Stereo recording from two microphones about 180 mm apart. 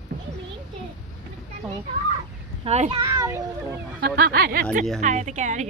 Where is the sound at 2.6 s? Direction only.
35° right (ahead or behind).